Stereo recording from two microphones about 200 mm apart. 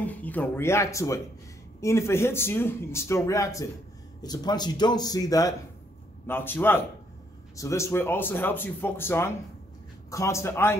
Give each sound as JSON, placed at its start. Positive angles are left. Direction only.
{"t": 0.0, "sound": "speech", "side_deg": 10}